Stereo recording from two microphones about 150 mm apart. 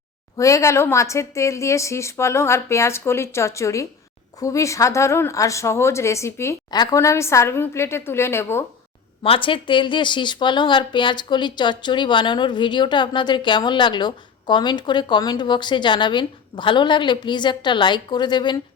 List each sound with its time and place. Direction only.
0.3 s a woman's voice: 20° left (ahead or behind)
9.2 s speech: 35° left (ahead or behind)